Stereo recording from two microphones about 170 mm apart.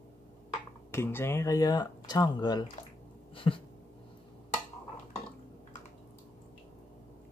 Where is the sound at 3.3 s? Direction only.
30° left (ahead or behind).